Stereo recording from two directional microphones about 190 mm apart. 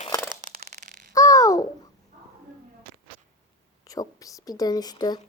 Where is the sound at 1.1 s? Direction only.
15° left (ahead or behind).